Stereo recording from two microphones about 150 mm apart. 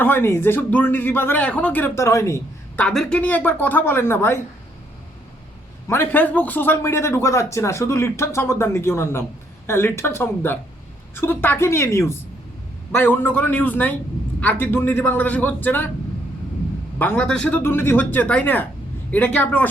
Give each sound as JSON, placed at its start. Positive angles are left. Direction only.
{"t": 0.0, "sound": "speech", "side_deg": 15}
{"t": 2.8, "sound": "speech", "side_deg": 5}
{"t": 5.9, "sound": "speech", "side_deg": 15}
{"t": 17.0, "sound": "speech", "side_deg": 10}